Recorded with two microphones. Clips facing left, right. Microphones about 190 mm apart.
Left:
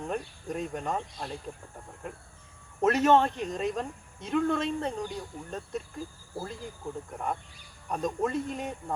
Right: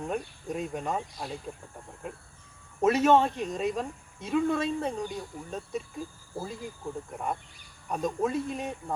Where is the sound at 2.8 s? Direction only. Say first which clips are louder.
Right 1 dB; 5° right (ahead or behind).